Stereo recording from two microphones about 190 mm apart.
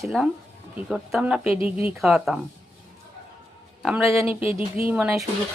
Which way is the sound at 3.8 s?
10° right (ahead or behind).